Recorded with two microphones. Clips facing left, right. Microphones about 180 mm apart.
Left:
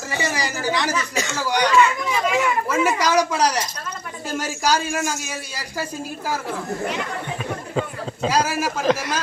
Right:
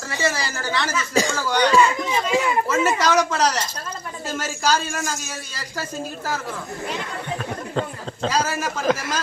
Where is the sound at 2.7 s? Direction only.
10° left (ahead or behind).